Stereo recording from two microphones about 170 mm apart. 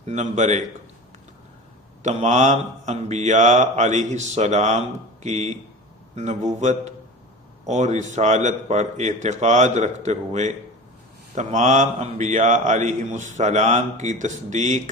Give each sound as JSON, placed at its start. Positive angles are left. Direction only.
{"t": 0.0, "sound": "speech", "side_deg": -45}
{"t": 2.0, "sound": "speech", "side_deg": -45}